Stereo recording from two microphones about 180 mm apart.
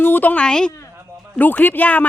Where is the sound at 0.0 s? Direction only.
10° left (ahead or behind).